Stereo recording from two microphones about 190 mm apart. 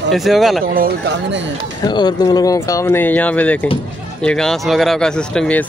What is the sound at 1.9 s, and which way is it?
Speech, 20° left (ahead or behind).